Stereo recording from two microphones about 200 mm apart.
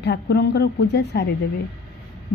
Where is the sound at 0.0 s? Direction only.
55° left (ahead or behind).